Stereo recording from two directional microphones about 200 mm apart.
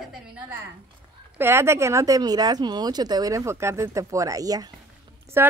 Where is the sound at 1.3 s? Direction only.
10° right (ahead or behind).